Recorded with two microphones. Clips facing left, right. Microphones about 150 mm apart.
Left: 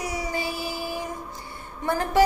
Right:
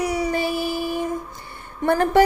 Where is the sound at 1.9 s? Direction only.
60° right (ahead or behind).